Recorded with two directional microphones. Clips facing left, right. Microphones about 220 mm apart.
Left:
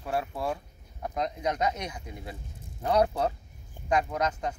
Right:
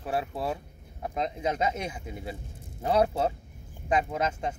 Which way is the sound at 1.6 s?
25° right (ahead or behind).